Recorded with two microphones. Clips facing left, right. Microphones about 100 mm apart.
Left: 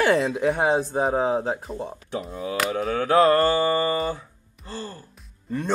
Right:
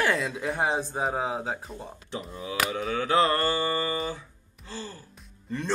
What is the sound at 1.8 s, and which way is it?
Mantra, 45° left (ahead or behind).